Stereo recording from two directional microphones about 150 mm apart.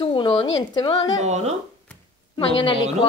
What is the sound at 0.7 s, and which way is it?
Speech, 30° left (ahead or behind).